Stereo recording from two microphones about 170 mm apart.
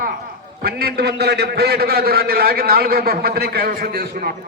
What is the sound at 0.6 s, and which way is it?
A man's voice, 65° right (ahead or behind).